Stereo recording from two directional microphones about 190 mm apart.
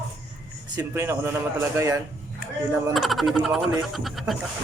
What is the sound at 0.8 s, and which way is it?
Speech, 10° right (ahead or behind).